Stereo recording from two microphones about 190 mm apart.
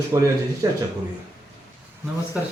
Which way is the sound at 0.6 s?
20° right (ahead or behind).